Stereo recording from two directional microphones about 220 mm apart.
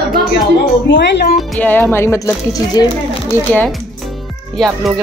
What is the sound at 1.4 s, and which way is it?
Speech, 5° left (ahead or behind).